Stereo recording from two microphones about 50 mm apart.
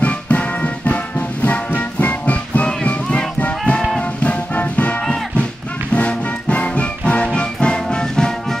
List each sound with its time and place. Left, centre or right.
0.0 s music: left
5.9 s music: left